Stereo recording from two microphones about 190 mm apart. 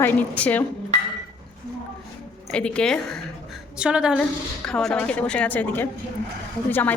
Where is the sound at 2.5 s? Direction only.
5° left (ahead or behind).